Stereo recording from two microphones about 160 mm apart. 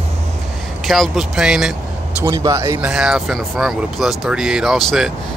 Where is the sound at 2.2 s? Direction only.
20° right (ahead or behind).